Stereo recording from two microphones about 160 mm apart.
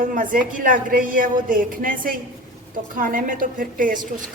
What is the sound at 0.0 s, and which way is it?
A woman's voice, 60° right (ahead or behind).